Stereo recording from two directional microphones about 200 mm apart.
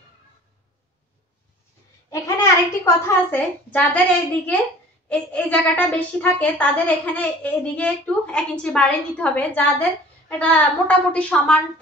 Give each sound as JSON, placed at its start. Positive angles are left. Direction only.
{"t": 2.0, "sound": "a woman's voice", "side_deg": 15}
{"t": 5.1, "sound": "a woman's voice", "side_deg": 5}